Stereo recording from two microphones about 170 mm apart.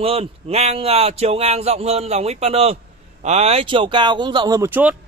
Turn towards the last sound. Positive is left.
turn(degrees=-10)  # may be behind; listen again after turning